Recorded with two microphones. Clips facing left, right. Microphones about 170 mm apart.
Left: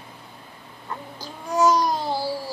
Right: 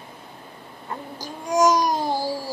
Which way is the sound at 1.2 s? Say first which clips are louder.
Right 2 dB; 15° right (ahead or behind).